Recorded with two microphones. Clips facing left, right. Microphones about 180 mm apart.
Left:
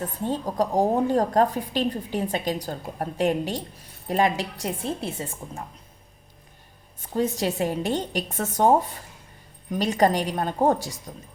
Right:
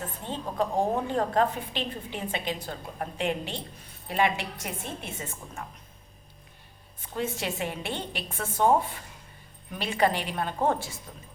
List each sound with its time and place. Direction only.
0.3 s a woman's voice: 40° left (ahead or behind)
7.1 s a woman's voice: 35° left (ahead or behind)